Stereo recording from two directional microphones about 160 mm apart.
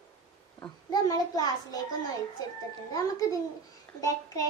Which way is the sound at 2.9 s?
20° left (ahead or behind).